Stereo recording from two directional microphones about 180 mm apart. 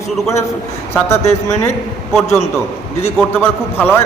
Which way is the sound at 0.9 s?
15° left (ahead or behind).